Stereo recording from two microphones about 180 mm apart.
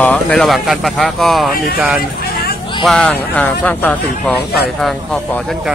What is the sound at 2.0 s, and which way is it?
Vehicle, 55° left (ahead or behind).